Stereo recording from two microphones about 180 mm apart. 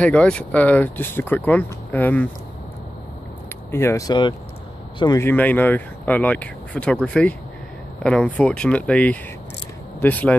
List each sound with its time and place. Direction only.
0.0 s speech: 5° left (ahead or behind)
3.7 s speech: 15° left (ahead or behind)